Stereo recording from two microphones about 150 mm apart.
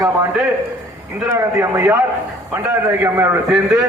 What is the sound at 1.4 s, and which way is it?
A man's voice, 20° right (ahead or behind).